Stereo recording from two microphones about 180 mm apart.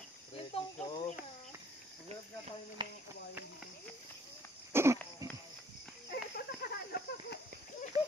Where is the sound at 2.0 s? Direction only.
35° right (ahead or behind).